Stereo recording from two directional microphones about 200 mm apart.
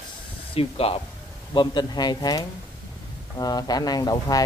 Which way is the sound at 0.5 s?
30° left (ahead or behind).